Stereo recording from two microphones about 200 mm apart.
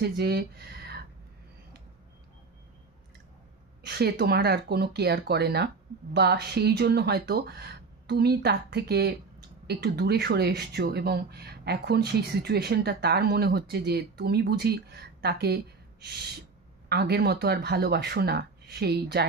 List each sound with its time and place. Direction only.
0.0 s speech: 55° right (ahead or behind)
3.8 s speech: 55° right (ahead or behind)
16.9 s speech: 55° right (ahead or behind)